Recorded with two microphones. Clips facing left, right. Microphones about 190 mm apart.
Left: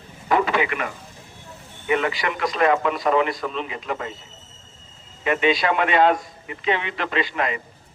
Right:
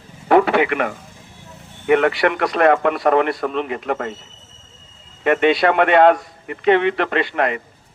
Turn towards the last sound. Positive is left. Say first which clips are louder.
# right 5 dB
turn(degrees=-60)  # may be behind; listen again after turning